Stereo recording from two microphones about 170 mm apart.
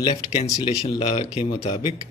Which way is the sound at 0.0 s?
35° left (ahead or behind).